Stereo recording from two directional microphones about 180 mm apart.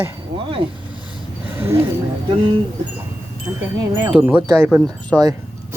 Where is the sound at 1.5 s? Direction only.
10° right (ahead or behind).